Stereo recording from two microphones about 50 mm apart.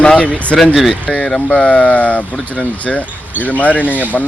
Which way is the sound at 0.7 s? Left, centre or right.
Centre.